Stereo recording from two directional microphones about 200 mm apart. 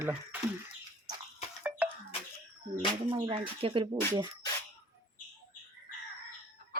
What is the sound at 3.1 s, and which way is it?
Speech, 25° right (ahead or behind).